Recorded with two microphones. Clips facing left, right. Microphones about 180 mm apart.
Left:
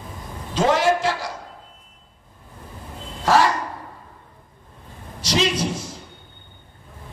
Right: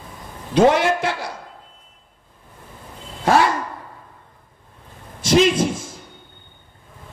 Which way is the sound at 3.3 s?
55° right (ahead or behind).